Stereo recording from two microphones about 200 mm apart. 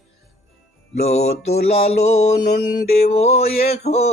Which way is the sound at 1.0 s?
35° left (ahead or behind).